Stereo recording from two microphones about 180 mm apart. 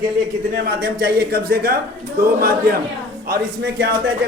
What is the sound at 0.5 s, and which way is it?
A man's voice, 65° right (ahead or behind).